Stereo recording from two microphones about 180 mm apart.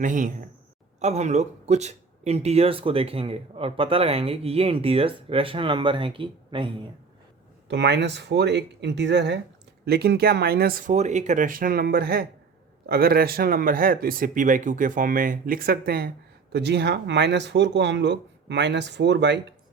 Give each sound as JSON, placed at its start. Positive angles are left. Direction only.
{"t": 0.0, "sound": "speech", "side_deg": -45}
{"t": 7.7, "sound": "speech", "side_deg": -75}